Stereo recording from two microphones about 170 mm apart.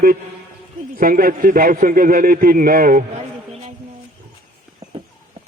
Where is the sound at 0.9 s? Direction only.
55° right (ahead or behind).